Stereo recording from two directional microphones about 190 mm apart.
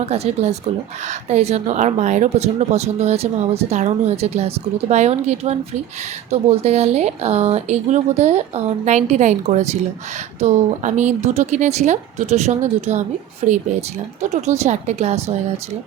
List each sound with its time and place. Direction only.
0.0 s speech: 35° right (ahead or behind)